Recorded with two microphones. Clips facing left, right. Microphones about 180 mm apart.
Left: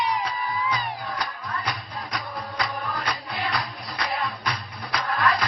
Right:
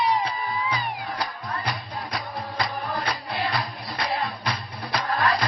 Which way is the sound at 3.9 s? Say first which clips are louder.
Right 1 dB; 35° right (ahead or behind).